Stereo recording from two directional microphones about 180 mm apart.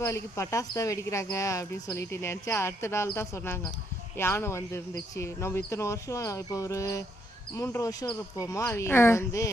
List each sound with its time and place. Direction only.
0.3 s speech: 20° left (ahead or behind)